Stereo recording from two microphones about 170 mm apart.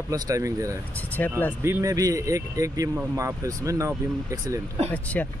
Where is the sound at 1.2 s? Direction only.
10° left (ahead or behind).